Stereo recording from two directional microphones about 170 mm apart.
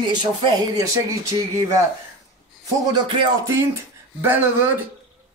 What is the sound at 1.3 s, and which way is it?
Speech, 20° right (ahead or behind).